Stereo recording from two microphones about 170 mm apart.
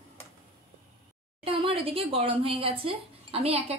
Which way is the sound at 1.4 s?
30° right (ahead or behind).